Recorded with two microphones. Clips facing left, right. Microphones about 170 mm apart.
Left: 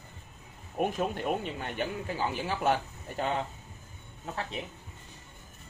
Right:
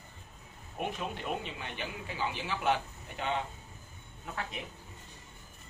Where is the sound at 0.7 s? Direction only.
45° left (ahead or behind).